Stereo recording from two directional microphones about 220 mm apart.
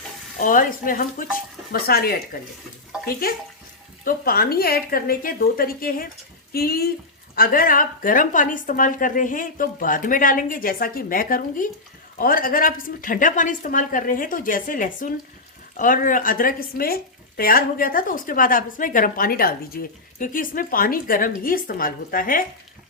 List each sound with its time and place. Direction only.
0.3 s speech: 40° left (ahead or behind)